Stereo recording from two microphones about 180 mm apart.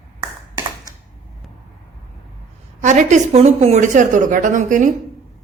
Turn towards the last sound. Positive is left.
turn(degrees=-45)  # may be behind; listen again after turning